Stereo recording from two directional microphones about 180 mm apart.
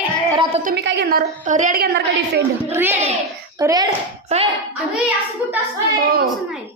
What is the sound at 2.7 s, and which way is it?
A child's voice, 10° right (ahead or behind).